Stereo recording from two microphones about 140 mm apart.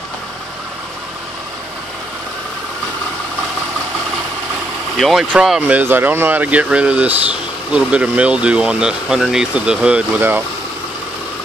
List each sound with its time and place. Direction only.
4.9 s speech: centre (ahead or behind)